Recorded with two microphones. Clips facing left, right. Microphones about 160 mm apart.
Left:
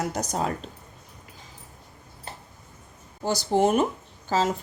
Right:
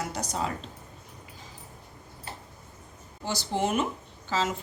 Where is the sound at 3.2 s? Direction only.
40° left (ahead or behind).